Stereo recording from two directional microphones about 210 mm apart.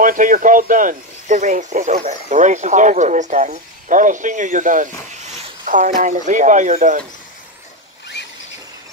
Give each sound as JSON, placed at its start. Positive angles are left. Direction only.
{"t": 0.0, "sound": "speech", "side_deg": -40}